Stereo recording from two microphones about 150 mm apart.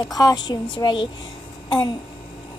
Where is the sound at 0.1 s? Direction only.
25° left (ahead or behind).